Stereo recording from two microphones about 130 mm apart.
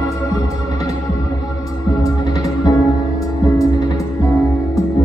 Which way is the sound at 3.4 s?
25° left (ahead or behind).